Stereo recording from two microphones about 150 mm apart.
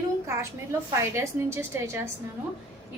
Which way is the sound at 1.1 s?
20° right (ahead or behind).